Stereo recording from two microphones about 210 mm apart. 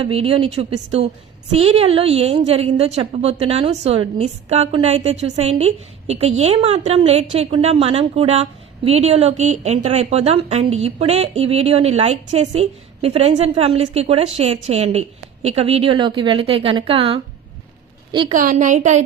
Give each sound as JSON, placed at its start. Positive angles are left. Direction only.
{"t": 0.0, "sound": "a woman's voice", "side_deg": -25}
{"t": 18.3, "sound": "a woman's voice", "side_deg": -40}